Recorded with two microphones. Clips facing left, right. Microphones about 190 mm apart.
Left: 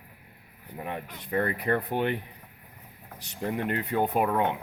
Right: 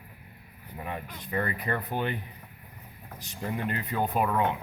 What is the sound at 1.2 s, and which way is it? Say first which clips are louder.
Speech: left 4 dB; 55° left (ahead or behind).